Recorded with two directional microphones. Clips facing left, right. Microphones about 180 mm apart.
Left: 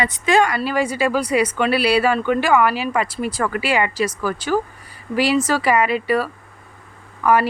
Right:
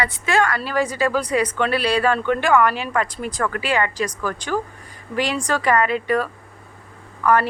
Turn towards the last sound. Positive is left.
turn(degrees=10)  # may be behind; listen again after turning